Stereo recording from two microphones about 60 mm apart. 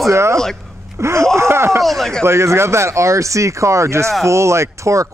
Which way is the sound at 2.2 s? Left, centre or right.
Right.